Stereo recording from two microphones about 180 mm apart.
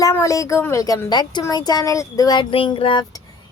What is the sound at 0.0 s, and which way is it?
A child's voice, 15° left (ahead or behind).